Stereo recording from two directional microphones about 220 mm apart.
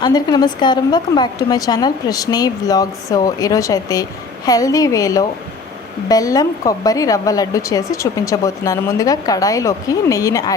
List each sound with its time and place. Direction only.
0.0 s speech: 20° left (ahead or behind)